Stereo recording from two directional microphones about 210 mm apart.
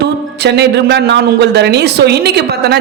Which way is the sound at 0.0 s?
55° right (ahead or behind).